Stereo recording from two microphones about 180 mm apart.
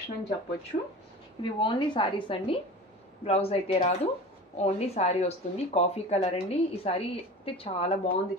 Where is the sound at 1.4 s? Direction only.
25° left (ahead or behind).